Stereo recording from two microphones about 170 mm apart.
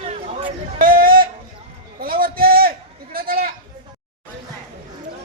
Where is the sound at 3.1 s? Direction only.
60° right (ahead or behind).